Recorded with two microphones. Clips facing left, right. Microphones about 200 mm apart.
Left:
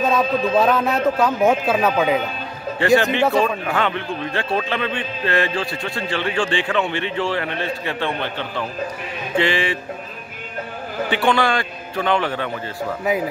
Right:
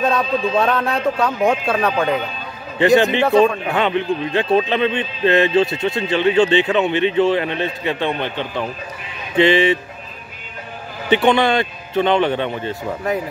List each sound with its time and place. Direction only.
0.0 s speech: centre (ahead or behind)
3.0 s a man's voice: 20° right (ahead or behind)
11.1 s a man's voice: 20° right (ahead or behind)